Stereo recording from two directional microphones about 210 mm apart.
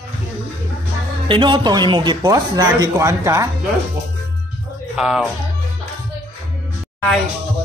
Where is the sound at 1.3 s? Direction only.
20° right (ahead or behind).